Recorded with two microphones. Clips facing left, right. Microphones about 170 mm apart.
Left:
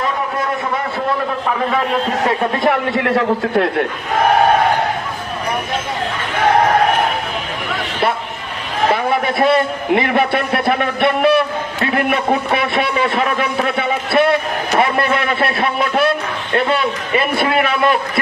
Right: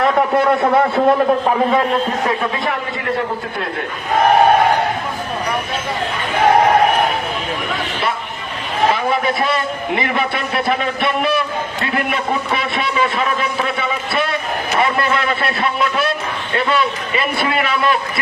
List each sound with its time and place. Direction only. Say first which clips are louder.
0.0 s a sound: right 6 dB; 65° right (ahead or behind)
2.6 s a man's voice: left 6 dB; 80° left
9.0 s a man's voice: left 3 dB; 55° left (ahead or behind)